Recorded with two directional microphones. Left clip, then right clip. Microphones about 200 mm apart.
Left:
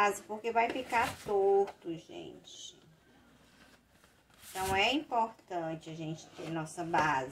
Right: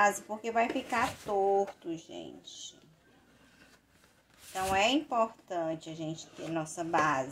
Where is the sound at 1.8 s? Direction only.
30° right (ahead or behind).